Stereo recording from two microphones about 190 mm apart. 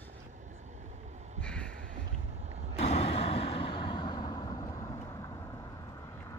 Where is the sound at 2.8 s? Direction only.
35° left (ahead or behind); by 5.7 s 20° left (ahead or behind).